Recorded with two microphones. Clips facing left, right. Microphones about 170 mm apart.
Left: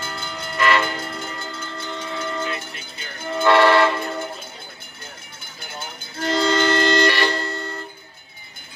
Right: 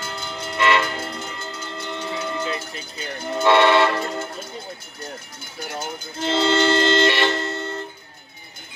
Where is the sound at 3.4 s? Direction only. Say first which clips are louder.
Left 1 dB; 20° right (ahead or behind).